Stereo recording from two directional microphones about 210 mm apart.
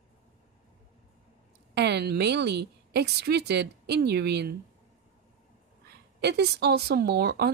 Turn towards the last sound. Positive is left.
turn(degrees=-50)  # may be behind; listen again after turning